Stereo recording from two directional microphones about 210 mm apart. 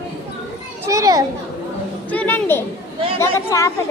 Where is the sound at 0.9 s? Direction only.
15° right (ahead or behind).